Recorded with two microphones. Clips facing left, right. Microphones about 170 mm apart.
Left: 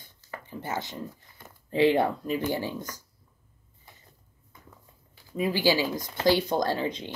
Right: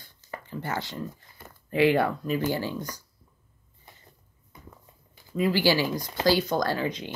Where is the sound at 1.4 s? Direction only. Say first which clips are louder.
Right 2 dB; 5° right (ahead or behind).